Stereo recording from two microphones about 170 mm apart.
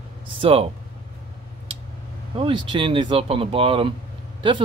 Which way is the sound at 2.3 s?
30° right (ahead or behind).